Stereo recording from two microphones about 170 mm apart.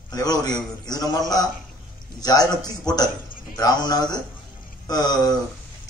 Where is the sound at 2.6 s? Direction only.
25° left (ahead or behind).